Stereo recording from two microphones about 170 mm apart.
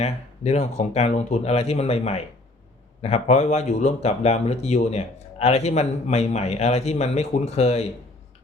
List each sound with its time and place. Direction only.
0.0 s speech: 40° left (ahead or behind)